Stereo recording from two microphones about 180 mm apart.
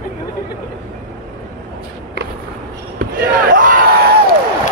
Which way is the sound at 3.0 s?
50° right (ahead or behind).